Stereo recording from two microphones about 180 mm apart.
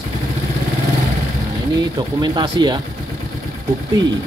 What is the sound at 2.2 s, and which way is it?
Speech, 25° right (ahead or behind).